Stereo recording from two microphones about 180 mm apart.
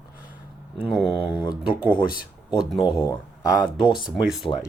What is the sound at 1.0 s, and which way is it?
Speech, 30° left (ahead or behind).